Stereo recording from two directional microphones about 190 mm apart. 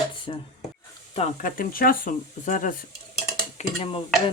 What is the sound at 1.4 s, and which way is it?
Speech, 50° left (ahead or behind).